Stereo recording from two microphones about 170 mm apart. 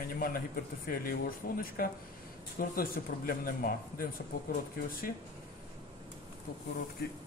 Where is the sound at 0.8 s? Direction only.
55° left (ahead or behind).